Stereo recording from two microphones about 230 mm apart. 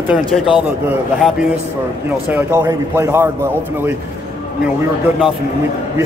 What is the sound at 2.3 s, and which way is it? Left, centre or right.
Speech, centre.